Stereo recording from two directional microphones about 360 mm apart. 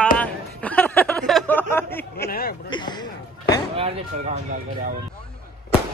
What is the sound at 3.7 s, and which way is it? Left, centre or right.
Speech, centre.